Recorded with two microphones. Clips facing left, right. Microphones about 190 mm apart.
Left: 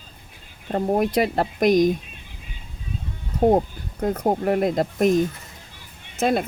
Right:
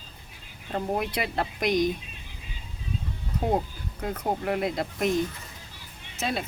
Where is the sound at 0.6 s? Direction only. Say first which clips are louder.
Left 7 dB; 45° left (ahead or behind).